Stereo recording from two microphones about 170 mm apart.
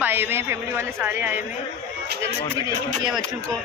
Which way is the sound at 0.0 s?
10° right (ahead or behind).